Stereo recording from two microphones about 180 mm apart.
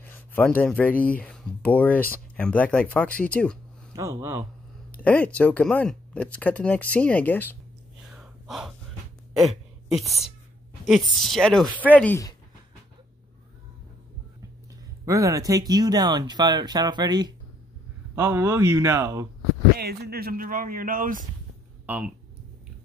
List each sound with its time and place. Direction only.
0.0 s a sound: 10° left (ahead or behind)
0.6 s speech: 10° left (ahead or behind)
3.9 s speech: 15° right (ahead or behind)
5.0 s speech: 10° left (ahead or behind)
8.1 s gasp: centre (ahead or behind)
9.3 s speech: centre (ahead or behind)
15.0 s speech: 20° right (ahead or behind)
19.8 s speech: 60° right (ahead or behind)
21.8 s speech: 10° right (ahead or behind)